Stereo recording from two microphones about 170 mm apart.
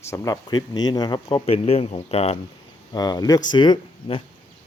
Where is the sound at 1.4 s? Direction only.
35° left (ahead or behind).